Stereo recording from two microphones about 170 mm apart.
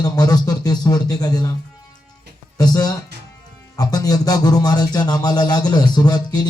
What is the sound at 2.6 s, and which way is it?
A man's voice, 25° left (ahead or behind).